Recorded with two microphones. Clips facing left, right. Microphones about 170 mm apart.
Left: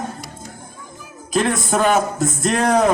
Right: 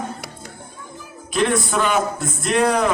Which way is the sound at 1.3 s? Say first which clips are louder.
Left 1 dB; 40° left (ahead or behind).